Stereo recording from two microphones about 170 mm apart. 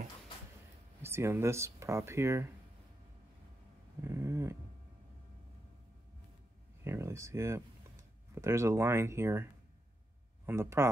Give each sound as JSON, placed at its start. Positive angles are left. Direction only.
{"t": 1.0, "sound": "speech", "side_deg": -15}
{"t": 4.0, "sound": "dog", "side_deg": -15}
{"t": 6.8, "sound": "speech", "side_deg": -15}